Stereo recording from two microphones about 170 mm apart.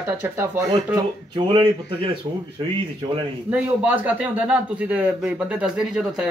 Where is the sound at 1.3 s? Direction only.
30° right (ahead or behind).